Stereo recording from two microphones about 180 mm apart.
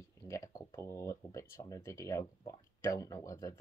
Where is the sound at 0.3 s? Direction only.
20° left (ahead or behind).